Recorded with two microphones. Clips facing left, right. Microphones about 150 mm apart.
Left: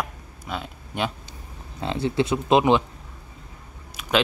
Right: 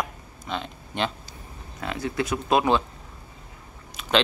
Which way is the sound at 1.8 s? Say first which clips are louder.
Left 5 dB; 25° left (ahead or behind).